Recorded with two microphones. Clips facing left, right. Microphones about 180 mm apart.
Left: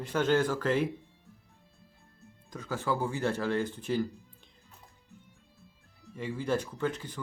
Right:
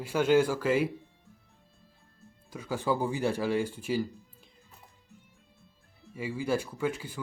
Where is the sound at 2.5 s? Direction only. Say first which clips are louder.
Right 2 dB; 10° right (ahead or behind).